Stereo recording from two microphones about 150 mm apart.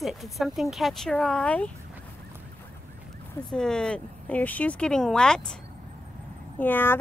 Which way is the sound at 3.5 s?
5° left (ahead or behind).